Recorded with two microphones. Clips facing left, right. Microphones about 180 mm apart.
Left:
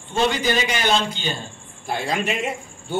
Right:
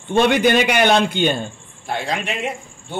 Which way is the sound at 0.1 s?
60° right (ahead or behind).